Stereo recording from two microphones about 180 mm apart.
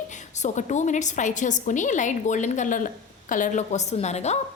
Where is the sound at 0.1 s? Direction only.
40° left (ahead or behind).